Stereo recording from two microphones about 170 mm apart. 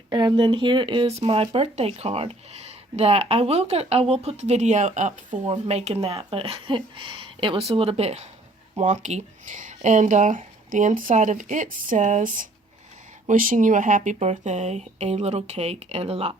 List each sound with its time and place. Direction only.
0.1 s speech: 25° right (ahead or behind)